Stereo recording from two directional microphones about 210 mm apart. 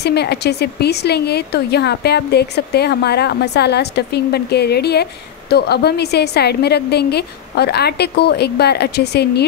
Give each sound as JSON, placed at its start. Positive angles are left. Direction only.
{"t": 0.0, "sound": "a woman's voice", "side_deg": 50}